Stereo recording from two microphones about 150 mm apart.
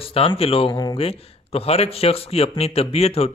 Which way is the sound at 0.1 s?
40° left (ahead or behind).